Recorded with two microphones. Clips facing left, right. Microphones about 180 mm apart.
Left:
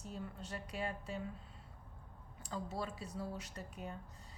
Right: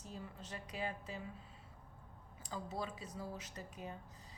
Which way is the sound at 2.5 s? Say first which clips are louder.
Left 1 dB; centre (ahead or behind).